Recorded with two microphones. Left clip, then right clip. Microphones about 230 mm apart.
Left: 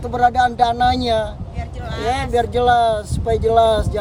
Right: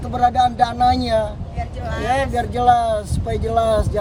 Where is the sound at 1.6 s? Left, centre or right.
Centre.